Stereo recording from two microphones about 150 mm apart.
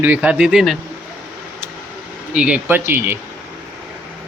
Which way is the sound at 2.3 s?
10° right (ahead or behind).